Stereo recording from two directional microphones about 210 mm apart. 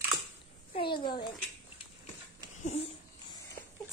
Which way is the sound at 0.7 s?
20° left (ahead or behind).